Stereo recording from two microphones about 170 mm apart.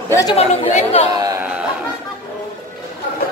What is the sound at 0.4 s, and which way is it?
Speech, 40° left (ahead or behind).